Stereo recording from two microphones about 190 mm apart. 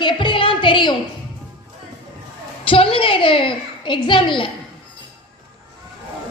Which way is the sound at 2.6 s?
30° left (ahead or behind).